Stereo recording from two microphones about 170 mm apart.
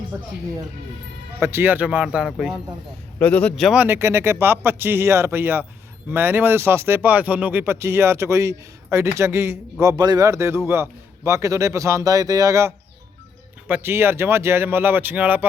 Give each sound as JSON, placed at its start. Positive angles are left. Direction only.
{"t": 1.4, "sound": "speech", "side_deg": -15}
{"t": 3.2, "sound": "speech", "side_deg": 10}
{"t": 3.8, "sound": "speech", "side_deg": -15}